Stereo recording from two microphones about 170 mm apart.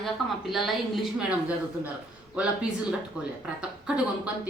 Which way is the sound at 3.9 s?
5° right (ahead or behind).